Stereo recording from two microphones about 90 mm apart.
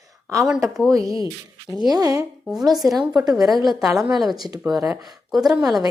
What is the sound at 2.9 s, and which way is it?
A woman's voice, 50° right (ahead or behind).